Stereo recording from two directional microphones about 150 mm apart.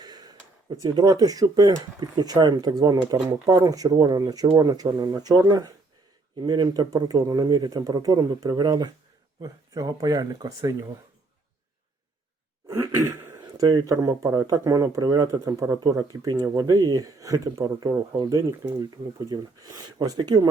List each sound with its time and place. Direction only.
0.0 s speech: 25° right (ahead or behind)
12.6 s throat clearing: 20° right (ahead or behind)
13.4 s speech: 30° right (ahead or behind)